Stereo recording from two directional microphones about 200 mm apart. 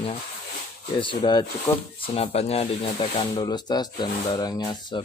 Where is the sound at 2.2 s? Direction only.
30° left (ahead or behind).